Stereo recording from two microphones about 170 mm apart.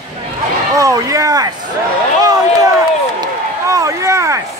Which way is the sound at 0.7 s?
20° right (ahead or behind).